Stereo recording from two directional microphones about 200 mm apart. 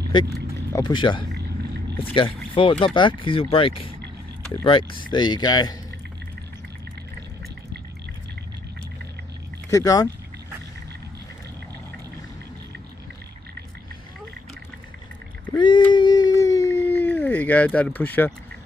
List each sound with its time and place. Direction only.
0.7 s speech: 20° left (ahead or behind)
9.7 s speech: 15° left (ahead or behind)
15.5 s a sound: 25° left (ahead or behind)